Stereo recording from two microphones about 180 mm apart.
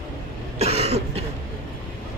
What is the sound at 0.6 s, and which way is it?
Cough, 35° right (ahead or behind).